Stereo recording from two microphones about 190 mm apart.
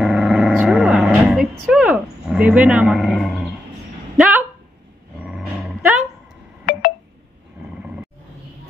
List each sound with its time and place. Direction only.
0.0 s a sound: 5° right (ahead or behind)
5.2 s dog: 5° right (ahead or behind)
6.6 s telephone dialing: 45° left (ahead or behind)